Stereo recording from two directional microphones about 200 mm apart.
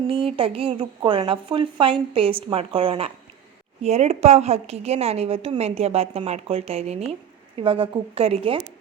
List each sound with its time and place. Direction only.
0.1 s a woman's voice: 25° right (ahead or behind)